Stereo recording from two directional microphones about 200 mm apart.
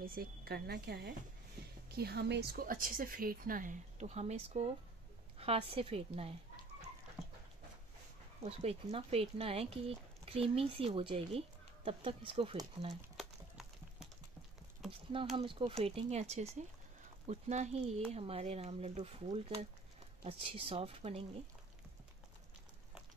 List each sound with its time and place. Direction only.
0.0 s speech: 50° right (ahead or behind); by 6.3 s 30° right (ahead or behind)
8.5 s speech: 30° right (ahead or behind)
13.2 s a sound: centre (ahead or behind)
15.3 s speech: 25° right (ahead or behind)